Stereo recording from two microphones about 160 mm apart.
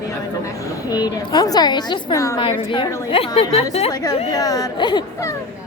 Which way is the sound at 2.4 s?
30° left (ahead or behind).